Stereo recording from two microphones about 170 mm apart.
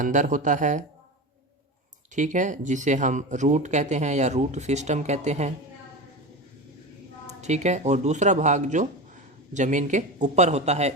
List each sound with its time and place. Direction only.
0.0 s speech: 50° right (ahead or behind)
2.1 s speech: 45° right (ahead or behind)
7.4 s speech: 40° right (ahead or behind)